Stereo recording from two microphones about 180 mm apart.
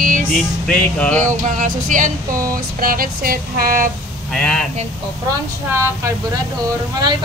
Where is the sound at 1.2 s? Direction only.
45° right (ahead or behind).